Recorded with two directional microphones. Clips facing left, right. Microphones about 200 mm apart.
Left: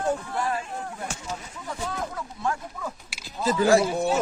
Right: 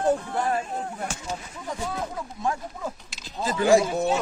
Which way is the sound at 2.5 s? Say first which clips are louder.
Right 1 dB; 15° right (ahead or behind).